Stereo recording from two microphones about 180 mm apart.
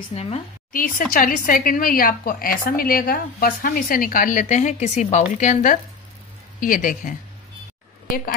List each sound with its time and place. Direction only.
0.1 s a woman's voice: 35° left (ahead or behind)
0.7 s speech: 50° left (ahead or behind)